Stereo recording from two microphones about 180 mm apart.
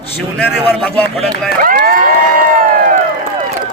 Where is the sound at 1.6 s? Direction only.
50° right (ahead or behind).